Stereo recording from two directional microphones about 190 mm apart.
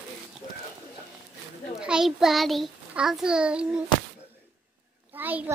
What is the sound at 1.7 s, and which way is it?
A child's voice, 5° right (ahead or behind).